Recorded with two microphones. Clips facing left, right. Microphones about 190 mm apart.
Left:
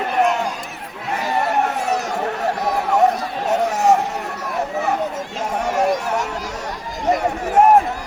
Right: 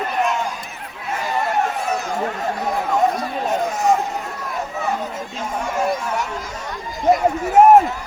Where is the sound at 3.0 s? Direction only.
70° left (ahead or behind).